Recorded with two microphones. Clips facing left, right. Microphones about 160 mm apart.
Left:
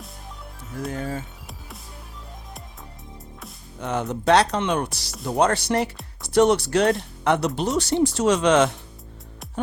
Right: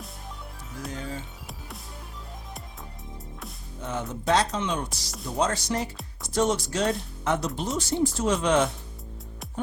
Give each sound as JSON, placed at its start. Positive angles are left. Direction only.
{"t": 0.9, "sound": "music", "side_deg": 55}
{"t": 3.8, "sound": "music", "side_deg": 75}
{"t": 4.1, "sound": "speech", "side_deg": 70}